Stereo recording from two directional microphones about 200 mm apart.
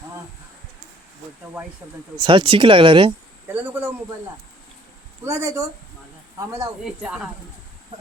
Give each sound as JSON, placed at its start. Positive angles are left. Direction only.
{"t": 2.2, "sound": "speech", "side_deg": -25}
{"t": 3.5, "sound": "speech", "side_deg": -10}
{"t": 5.2, "sound": "speech", "side_deg": -15}
{"t": 6.8, "sound": "speech", "side_deg": -5}